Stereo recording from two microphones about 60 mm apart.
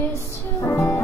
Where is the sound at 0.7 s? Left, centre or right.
Left.